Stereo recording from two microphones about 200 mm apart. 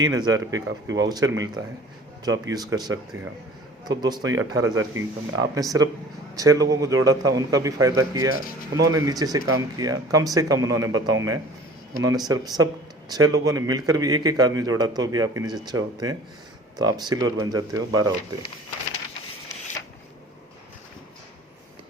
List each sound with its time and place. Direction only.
0.0 s a man's voice: 20° right (ahead or behind)